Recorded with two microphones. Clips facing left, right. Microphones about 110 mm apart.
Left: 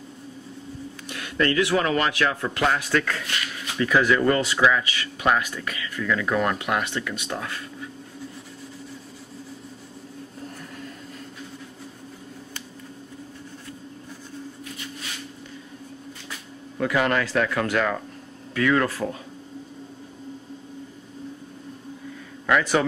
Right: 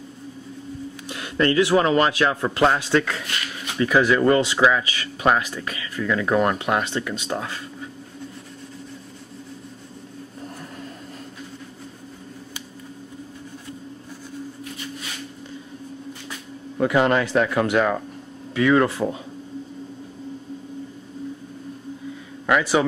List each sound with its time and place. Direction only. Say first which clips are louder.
1.0 s speech: right 3 dB; 30° right (ahead or behind)
16.7 s speech: right 4 dB; 25° right (ahead or behind)
22.5 s a man's voice: right 2 dB; 10° right (ahead or behind)